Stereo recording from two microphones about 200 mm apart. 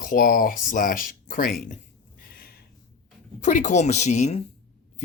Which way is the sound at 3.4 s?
40° left (ahead or behind).